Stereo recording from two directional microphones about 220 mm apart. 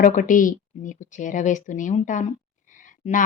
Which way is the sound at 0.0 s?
35° left (ahead or behind).